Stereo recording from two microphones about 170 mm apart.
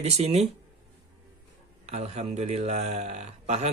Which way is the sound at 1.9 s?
40° right (ahead or behind).